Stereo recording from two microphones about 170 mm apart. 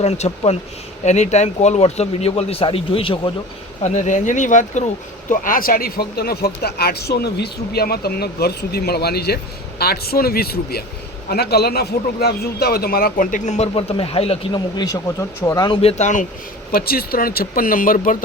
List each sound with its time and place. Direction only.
0.0 s speech: 40° left (ahead or behind)
3.8 s a man's voice: 45° left (ahead or behind)
14.8 s speech: 20° left (ahead or behind)
15.8 s speech: 40° left (ahead or behind)
16.7 s a man's voice: 65° left (ahead or behind)